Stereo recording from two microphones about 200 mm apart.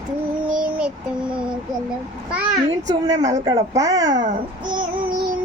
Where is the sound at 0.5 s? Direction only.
5° right (ahead or behind).